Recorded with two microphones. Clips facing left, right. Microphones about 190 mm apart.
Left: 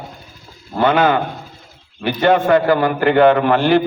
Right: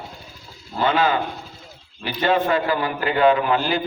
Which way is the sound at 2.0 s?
55° left (ahead or behind).